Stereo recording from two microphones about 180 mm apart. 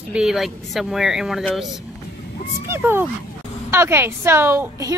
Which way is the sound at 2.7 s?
10° right (ahead or behind).